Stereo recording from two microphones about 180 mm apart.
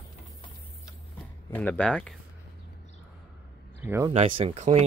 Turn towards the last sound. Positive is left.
turn(degrees=-40)  # may be behind; listen again after turning